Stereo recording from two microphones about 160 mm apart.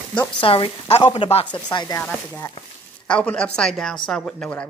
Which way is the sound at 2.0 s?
10° left (ahead or behind).